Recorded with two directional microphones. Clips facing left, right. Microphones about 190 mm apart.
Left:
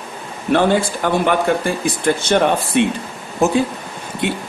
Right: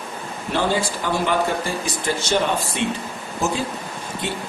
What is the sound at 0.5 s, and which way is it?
Speech, 55° left (ahead or behind).